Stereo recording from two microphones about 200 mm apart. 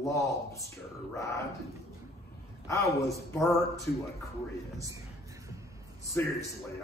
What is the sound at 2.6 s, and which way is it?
Speech, 15° left (ahead or behind).